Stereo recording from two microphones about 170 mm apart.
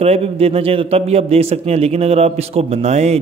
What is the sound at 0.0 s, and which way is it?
A man's voice, 35° right (ahead or behind).